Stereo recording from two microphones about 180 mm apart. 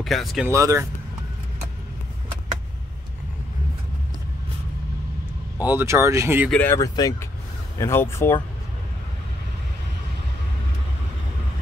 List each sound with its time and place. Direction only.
0.0 s speech: centre (ahead or behind)
0.5 s speech: 15° right (ahead or behind)
5.7 s speech: 15° right (ahead or behind)
6.5 s speech: 10° left (ahead or behind)